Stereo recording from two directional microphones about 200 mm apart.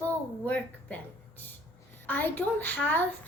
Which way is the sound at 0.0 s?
10° left (ahead or behind).